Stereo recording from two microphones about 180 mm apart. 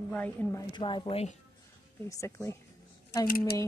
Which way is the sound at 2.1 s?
15° left (ahead or behind).